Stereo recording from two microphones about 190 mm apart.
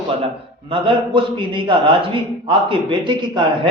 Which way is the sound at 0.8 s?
25° right (ahead or behind).